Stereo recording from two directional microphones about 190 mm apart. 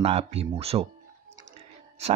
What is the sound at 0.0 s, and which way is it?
Speech, 30° right (ahead or behind).